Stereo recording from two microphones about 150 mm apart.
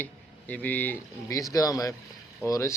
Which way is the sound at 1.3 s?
25° left (ahead or behind).